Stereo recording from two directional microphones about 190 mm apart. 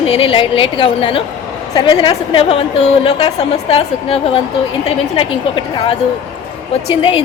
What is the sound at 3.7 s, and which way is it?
A woman's voice, 30° left (ahead or behind).